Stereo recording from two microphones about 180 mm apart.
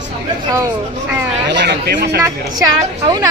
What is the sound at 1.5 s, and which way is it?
Speech, 70° right (ahead or behind).